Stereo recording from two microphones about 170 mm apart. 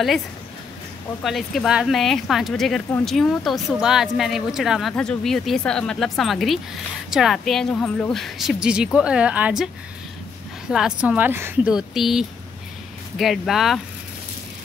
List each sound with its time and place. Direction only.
1.2 s speech: centre (ahead or behind)
10.7 s speech: 5° right (ahead or behind)
11.7 s speech: centre (ahead or behind)